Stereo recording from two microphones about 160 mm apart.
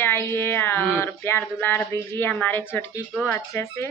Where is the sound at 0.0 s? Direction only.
15° left (ahead or behind).